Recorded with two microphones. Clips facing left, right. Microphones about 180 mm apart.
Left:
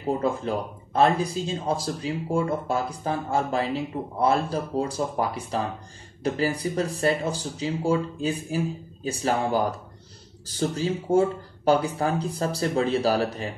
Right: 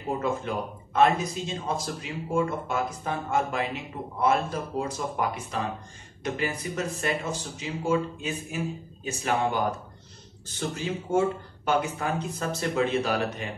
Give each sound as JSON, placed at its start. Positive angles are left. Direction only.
{"t": 0.2, "sound": "speech", "side_deg": 35}